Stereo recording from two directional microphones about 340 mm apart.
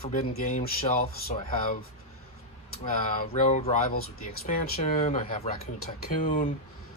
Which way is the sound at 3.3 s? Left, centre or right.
Centre.